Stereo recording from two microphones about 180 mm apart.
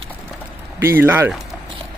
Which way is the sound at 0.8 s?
10° right (ahead or behind).